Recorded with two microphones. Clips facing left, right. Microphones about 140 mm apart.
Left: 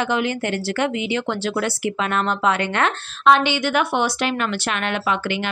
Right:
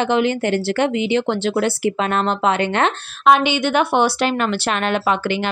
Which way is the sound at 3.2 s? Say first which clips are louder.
Right 2 dB; 15° right (ahead or behind).